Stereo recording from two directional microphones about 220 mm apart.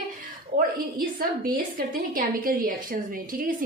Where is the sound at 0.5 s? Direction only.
40° right (ahead or behind).